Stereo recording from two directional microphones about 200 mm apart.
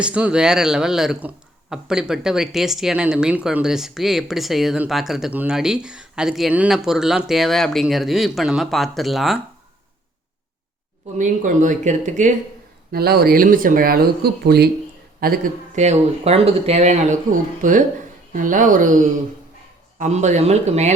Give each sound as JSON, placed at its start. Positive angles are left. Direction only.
{"t": 0.0, "sound": "speech", "side_deg": -5}
{"t": 11.2, "sound": "speech", "side_deg": -40}
{"t": 12.9, "sound": "speech", "side_deg": -50}
{"t": 20.0, "sound": "speech", "side_deg": -35}